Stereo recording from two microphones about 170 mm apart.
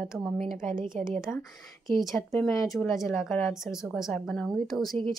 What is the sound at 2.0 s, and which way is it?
Speech, centre (ahead or behind).